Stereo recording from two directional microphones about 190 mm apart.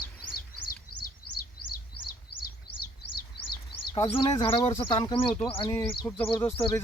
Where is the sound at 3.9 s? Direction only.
25° left (ahead or behind).